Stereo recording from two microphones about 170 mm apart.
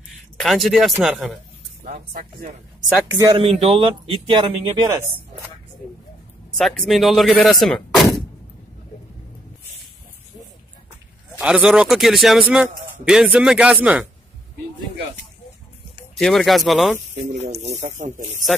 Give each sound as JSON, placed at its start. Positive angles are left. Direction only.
{"t": 0.4, "sound": "a man's voice", "side_deg": 0}
{"t": 1.9, "sound": "speech", "side_deg": -45}
{"t": 3.2, "sound": "speech", "side_deg": -30}
{"t": 6.6, "sound": "a man's voice", "side_deg": 0}
{"t": 11.4, "sound": "a man's voice", "side_deg": -5}
{"t": 16.2, "sound": "a man's voice", "side_deg": 0}
{"t": 17.3, "sound": "speech", "side_deg": -40}